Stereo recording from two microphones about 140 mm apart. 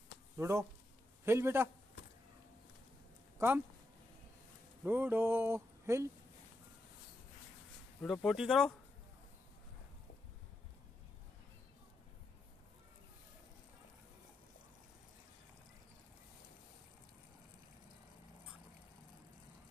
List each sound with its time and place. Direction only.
0.4 s a man's voice: 20° right (ahead or behind)
3.3 s speech: 15° right (ahead or behind)
4.8 s a sound: 15° right (ahead or behind)
8.0 s speech: centre (ahead or behind)